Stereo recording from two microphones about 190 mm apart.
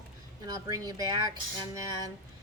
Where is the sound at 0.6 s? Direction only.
20° right (ahead or behind).